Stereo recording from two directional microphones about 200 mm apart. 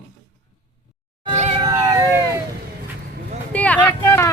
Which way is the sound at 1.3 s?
35° right (ahead or behind).